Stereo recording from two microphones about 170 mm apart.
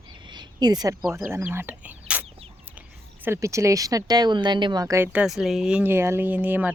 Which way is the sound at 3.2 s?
15° right (ahead or behind).